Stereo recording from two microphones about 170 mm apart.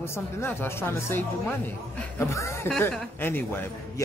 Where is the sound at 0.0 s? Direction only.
15° left (ahead or behind).